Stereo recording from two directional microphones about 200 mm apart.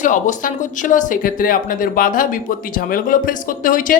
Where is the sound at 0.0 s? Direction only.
40° left (ahead or behind).